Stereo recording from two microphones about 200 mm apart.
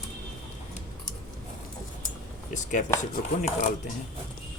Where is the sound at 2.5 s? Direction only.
40° left (ahead or behind).